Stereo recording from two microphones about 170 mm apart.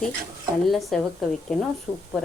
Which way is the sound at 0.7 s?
Centre (ahead or behind).